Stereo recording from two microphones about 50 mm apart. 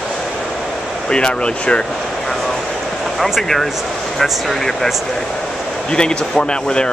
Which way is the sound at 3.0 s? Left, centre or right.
Centre.